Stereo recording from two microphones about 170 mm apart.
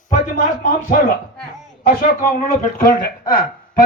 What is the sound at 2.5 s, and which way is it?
Speech, 55° left (ahead or behind).